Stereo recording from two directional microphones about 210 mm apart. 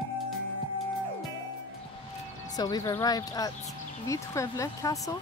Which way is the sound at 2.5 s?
20° left (ahead or behind).